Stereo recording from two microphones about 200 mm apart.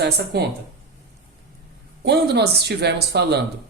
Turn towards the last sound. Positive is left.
turn(degrees=-55)  # may be behind; listen again after turning